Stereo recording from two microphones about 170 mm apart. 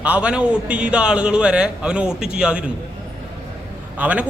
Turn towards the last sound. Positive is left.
turn(degrees=-10)  # may be behind; listen again after turning